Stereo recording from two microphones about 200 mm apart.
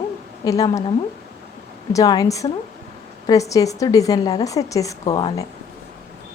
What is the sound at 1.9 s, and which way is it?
A woman's voice, 20° left (ahead or behind).